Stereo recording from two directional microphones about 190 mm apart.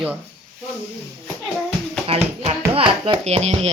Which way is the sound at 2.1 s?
30° right (ahead or behind).